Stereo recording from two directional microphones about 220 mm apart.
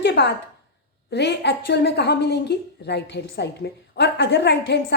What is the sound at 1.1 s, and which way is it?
A woman's voice, 50° left (ahead or behind).